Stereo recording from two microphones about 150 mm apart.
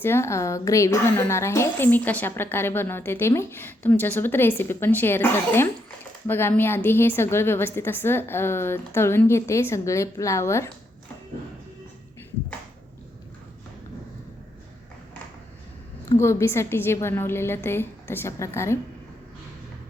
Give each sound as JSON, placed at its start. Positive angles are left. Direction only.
{"t": 0.0, "sound": "a woman's voice", "side_deg": 15}
{"t": 16.0, "sound": "a woman's voice", "side_deg": 20}